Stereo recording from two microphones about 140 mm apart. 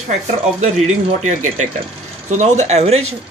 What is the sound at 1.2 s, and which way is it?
Speech, 60° right (ahead or behind).